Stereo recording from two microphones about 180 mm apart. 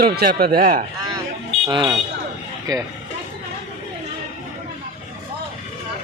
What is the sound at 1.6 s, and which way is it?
Speech, 25° right (ahead or behind).